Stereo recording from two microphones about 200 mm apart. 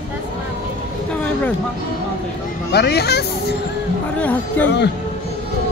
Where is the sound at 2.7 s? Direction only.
55° left (ahead or behind).